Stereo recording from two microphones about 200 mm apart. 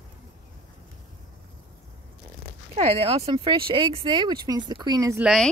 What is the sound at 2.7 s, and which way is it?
Speech, 30° right (ahead or behind).